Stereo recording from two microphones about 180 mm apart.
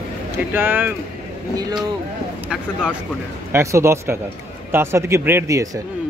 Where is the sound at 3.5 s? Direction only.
15° right (ahead or behind).